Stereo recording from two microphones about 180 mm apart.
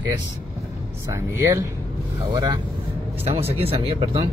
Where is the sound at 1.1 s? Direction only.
15° right (ahead or behind).